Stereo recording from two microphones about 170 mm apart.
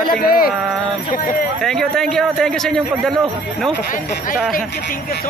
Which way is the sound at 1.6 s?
Centre (ahead or behind).